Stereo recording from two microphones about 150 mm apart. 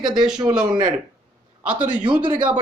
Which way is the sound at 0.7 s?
30° right (ahead or behind).